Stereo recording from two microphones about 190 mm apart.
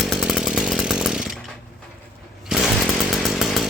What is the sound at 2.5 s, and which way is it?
Chainsaw, 5° right (ahead or behind).